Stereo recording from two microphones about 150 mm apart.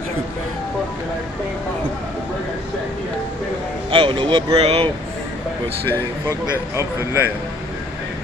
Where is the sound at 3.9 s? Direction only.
35° right (ahead or behind).